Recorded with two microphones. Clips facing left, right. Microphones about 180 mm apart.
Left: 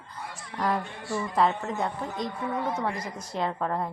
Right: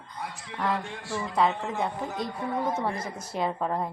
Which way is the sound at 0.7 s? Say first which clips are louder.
Left 1 dB; 90° right.